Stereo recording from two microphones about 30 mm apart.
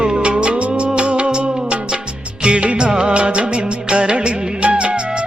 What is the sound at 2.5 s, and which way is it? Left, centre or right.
Music of bollywood, right.